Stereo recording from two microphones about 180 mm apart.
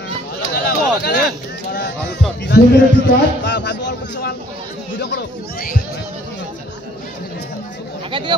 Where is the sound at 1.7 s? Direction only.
70° left (ahead or behind).